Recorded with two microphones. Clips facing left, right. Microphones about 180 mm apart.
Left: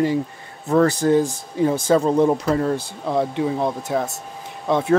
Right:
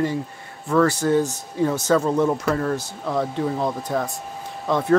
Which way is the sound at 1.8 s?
15° left (ahead or behind).